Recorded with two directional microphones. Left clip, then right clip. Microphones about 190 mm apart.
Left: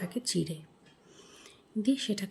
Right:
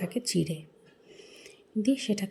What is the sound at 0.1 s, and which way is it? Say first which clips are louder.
Speech: right 2 dB; 5° right (ahead or behind).